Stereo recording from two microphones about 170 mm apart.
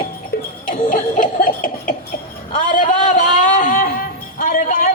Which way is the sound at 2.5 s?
50° left (ahead or behind).